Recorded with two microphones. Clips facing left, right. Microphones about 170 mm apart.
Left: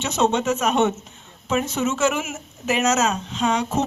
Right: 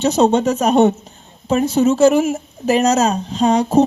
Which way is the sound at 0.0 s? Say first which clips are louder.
Right 7 dB; 35° right (ahead or behind).